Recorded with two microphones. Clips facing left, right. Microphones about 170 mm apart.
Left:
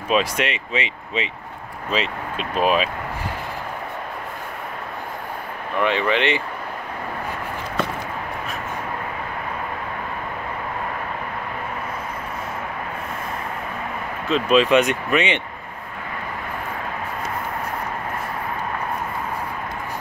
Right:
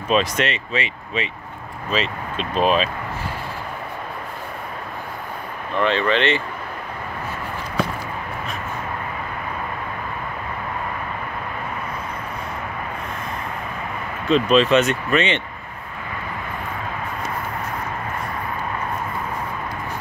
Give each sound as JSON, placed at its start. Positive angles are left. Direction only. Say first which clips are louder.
{"t": 0.1, "sound": "speech", "louder": "right 1 dB", "side_deg": 10}
{"t": 5.8, "sound": "speech", "louder": "right 1 dB", "side_deg": 15}
{"t": 14.2, "sound": "speech", "louder": "right 1 dB", "side_deg": 5}